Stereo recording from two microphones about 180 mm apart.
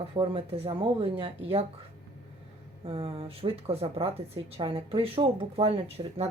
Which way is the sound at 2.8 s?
30° right (ahead or behind).